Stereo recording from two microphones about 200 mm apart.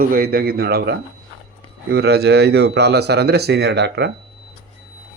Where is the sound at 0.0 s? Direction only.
50° right (ahead or behind).